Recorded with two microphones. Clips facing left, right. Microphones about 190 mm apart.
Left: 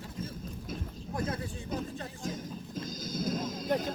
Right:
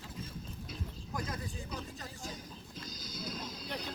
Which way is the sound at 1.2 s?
50° left (ahead or behind).